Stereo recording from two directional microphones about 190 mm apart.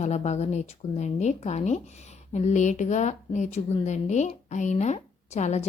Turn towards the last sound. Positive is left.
turn(degrees=35)  # may be behind; listen again after turning